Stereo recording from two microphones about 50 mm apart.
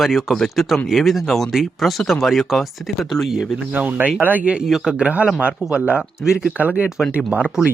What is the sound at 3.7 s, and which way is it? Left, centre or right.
Speech, right.